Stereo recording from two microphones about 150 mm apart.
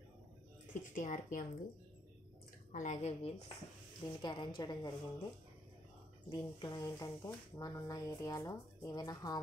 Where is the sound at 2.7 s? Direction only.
55° left (ahead or behind).